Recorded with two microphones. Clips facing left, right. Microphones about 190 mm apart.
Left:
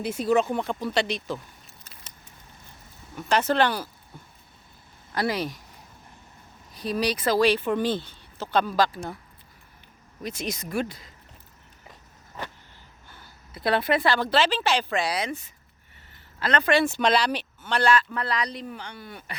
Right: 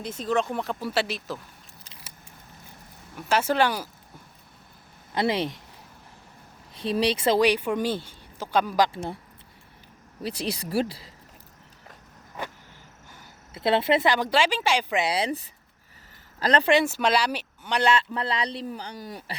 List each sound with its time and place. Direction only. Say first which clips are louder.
0.0 s speech: left 4 dB; 10° left (ahead or behind)
3.2 s speech: left 1 dB; 5° right (ahead or behind)
5.1 s speech: right 2 dB; 25° right (ahead or behind)
6.7 s speech: right 2 dB; 25° right (ahead or behind)
8.9 s speech: right 2 dB; 25° right (ahead or behind)
10.2 s speech: right 2 dB; 30° right (ahead or behind)
13.1 s speech: even; 20° right (ahead or behind)
16.7 s speech: even; 10° right (ahead or behind); by 19.4 s 35° right (ahead or behind)